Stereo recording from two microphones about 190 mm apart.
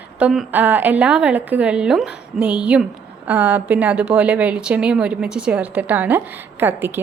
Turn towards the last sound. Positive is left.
turn(degrees=-10)  # may be behind; listen again after turning